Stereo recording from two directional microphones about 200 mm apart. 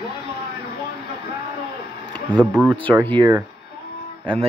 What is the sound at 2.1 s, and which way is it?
Speech, 5° left (ahead or behind).